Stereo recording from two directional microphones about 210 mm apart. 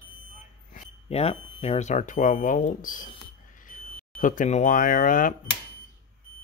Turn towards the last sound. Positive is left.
turn(degrees=40)  # may be behind; listen again after turning